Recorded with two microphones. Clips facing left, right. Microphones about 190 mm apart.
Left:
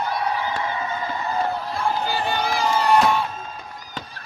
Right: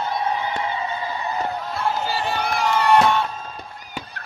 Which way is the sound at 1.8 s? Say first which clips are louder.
Even; centre (ahead or behind).